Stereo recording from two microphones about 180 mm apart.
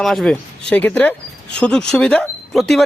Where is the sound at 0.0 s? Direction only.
Centre (ahead or behind).